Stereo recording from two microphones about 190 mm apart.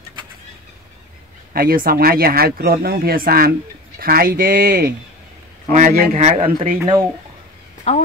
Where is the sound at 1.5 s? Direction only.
50° right (ahead or behind); by 6.7 s 30° right (ahead or behind).